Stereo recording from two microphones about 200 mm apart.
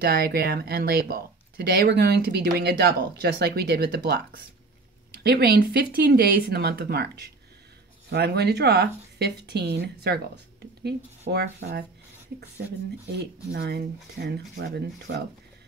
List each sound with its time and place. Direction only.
0.0 s speech: 50° right (ahead or behind)
13.5 s speech: 55° right (ahead or behind)